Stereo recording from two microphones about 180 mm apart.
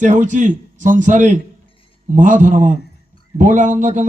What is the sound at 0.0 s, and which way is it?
Speech, 45° right (ahead or behind).